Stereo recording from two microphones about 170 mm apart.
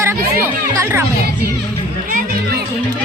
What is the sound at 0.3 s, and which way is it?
Speech, 15° right (ahead or behind).